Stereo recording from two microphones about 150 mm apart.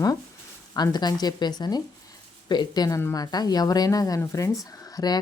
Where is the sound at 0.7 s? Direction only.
25° left (ahead or behind).